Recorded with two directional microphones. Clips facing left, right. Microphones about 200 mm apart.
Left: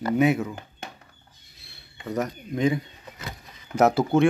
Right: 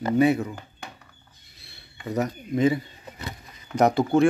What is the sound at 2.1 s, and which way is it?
Speech, 5° right (ahead or behind).